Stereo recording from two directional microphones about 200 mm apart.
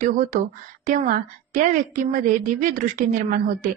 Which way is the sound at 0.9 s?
45° right (ahead or behind).